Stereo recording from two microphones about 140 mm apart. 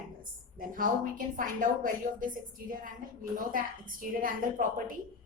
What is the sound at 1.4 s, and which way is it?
A woman's voice, 70° right (ahead or behind).